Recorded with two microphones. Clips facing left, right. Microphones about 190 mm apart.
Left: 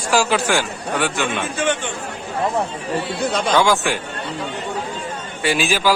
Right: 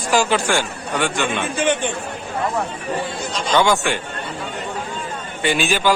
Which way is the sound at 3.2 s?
55° left (ahead or behind).